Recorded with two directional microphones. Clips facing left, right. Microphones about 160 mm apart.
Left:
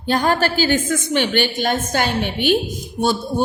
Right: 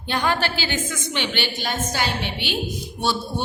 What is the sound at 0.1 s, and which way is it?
A woman's voice, 40° left (ahead or behind).